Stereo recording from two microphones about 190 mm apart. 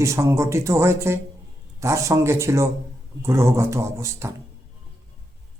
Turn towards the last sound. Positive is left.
turn(degrees=-15)  # may be behind; listen again after turning